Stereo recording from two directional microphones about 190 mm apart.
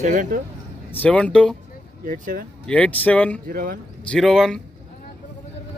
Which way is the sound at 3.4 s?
50° right (ahead or behind).